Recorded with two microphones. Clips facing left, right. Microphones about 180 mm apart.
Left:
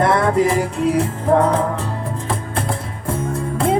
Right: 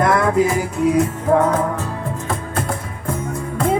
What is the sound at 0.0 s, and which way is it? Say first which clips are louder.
Music: even; 30° left (ahead or behind).